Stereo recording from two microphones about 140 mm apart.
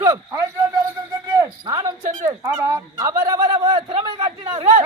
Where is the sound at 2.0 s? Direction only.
60° right (ahead or behind).